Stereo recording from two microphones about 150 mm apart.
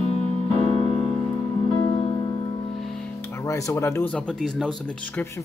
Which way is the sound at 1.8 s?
40° left (ahead or behind).